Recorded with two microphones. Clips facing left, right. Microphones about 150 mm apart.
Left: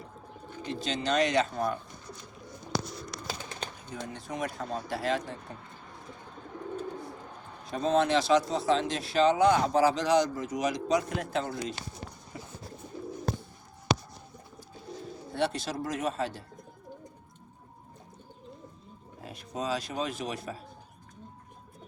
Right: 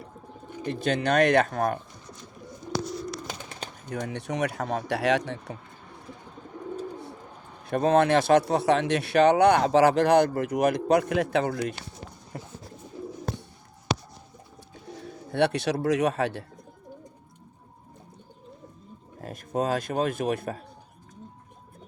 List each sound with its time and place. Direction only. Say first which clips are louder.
0.6 s speech: right 6 dB; 55° right (ahead or behind); by 1.8 s 75° right (ahead or behind)
3.8 s speech: right 10 dB; 70° right (ahead or behind)
7.7 s speech: right 5 dB; 60° right (ahead or behind)
12.3 s bird: right 4 dB; 55° right (ahead or behind)
15.0 s speech: right 6 dB; 70° right (ahead or behind)
19.2 s speech: right 7 dB; 50° right (ahead or behind)